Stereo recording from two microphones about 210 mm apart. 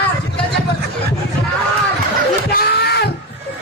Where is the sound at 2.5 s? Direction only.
50° left (ahead or behind).